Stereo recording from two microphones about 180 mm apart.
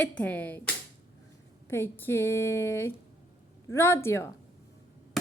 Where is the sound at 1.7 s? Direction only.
15° left (ahead or behind).